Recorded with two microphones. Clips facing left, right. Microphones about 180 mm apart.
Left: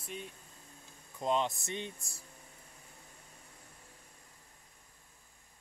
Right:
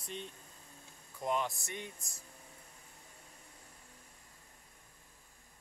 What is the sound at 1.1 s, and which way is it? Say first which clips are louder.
Speech: left 3 dB; 25° left (ahead or behind).